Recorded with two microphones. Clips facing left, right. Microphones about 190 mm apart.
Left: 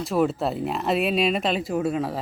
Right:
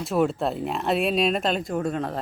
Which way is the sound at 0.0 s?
Centre (ahead or behind).